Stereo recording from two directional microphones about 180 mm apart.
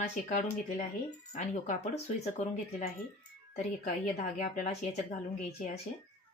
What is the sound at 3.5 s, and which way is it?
A woman's voice, 50° left (ahead or behind).